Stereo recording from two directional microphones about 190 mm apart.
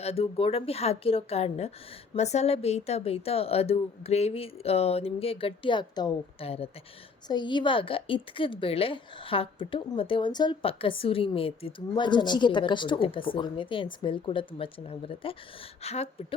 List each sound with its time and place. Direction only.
0.0 s a woman's voice: 30° left (ahead or behind)